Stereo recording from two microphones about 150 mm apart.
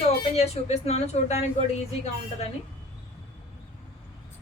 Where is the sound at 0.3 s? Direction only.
45° left (ahead or behind).